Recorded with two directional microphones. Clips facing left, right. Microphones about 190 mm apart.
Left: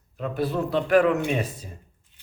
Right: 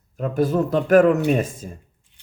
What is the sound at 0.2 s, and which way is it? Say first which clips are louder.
Speech: right 6 dB; 45° right (ahead or behind).